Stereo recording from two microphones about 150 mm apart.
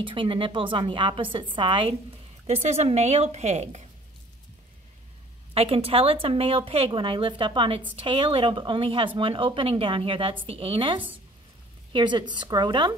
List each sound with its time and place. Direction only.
0.0 s a woman's voice: 35° right (ahead or behind)
2.4 s a woman's voice: 45° right (ahead or behind)
5.5 s a woman's voice: 40° right (ahead or behind)